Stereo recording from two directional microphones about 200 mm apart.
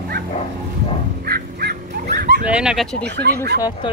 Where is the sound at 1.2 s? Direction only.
50° right (ahead or behind).